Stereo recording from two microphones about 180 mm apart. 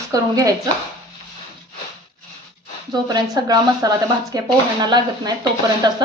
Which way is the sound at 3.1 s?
20° right (ahead or behind).